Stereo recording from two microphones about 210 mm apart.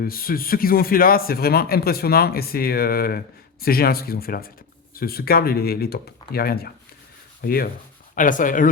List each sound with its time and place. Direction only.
0.0 s a man's voice: 45° left (ahead or behind)